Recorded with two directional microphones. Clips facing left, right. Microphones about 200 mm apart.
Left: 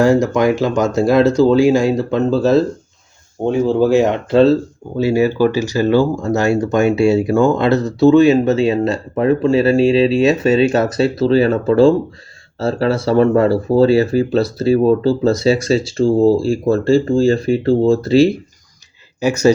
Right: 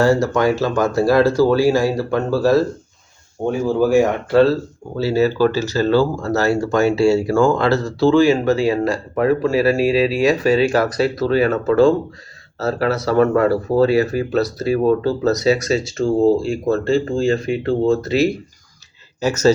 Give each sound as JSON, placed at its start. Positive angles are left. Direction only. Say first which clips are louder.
{"t": 0.0, "sound": "speech", "louder": "left 3 dB", "side_deg": 15}
{"t": 19.2, "sound": "speech", "louder": "left 2 dB", "side_deg": 10}